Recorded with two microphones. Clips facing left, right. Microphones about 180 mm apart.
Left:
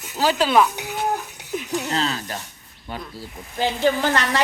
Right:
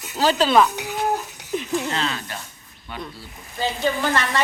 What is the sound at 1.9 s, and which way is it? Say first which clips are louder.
Speech: left 2 dB; 35° left (ahead or behind).